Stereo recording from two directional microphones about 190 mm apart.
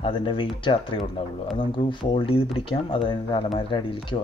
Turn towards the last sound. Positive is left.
turn(degrees=25)  # may be behind; listen again after turning